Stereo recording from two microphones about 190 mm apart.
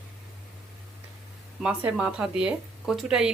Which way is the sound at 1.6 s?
5° right (ahead or behind).